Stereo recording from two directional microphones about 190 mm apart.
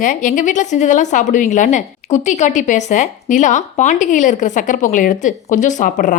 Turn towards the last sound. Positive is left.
turn(degrees=45)  # may be behind; listen again after turning